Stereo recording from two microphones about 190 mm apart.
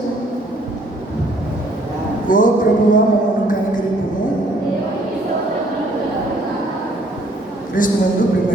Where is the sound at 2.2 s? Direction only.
45° left (ahead or behind).